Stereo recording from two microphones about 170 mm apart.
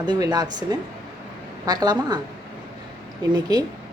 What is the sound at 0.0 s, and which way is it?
Speech, 25° right (ahead or behind).